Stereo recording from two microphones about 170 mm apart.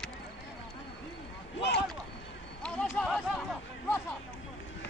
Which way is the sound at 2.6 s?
Centre (ahead or behind).